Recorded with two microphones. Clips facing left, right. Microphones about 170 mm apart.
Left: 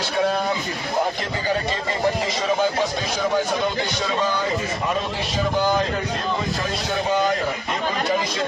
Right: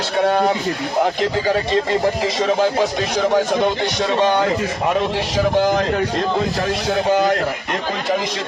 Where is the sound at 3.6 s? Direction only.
70° right (ahead or behind).